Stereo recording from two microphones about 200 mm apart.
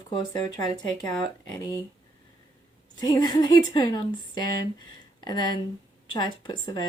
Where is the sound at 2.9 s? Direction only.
20° left (ahead or behind).